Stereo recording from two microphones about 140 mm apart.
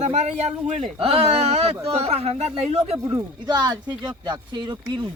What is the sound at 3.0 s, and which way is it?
Speech, 30° right (ahead or behind).